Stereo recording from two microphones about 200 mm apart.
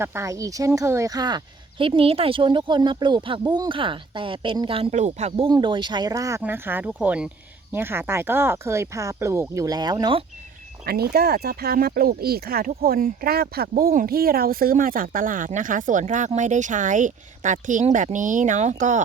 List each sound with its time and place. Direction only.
0.0 s a woman's voice: 15° right (ahead or behind); by 5.5 s 35° right (ahead or behind)
5.5 s speech: 20° right (ahead or behind)
10.8 s speech: 50° right (ahead or behind)